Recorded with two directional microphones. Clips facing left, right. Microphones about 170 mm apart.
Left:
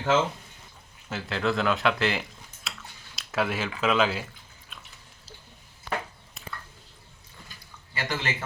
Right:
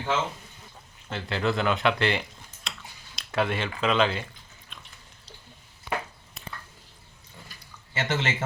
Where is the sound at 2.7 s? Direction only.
5° left (ahead or behind).